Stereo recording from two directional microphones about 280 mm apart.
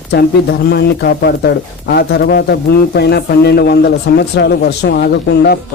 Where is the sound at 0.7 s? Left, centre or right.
Left.